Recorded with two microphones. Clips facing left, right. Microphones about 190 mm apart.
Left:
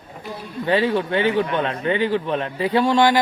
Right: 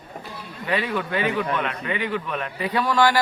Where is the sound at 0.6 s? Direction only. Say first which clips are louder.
Left 6 dB; 30° left (ahead or behind).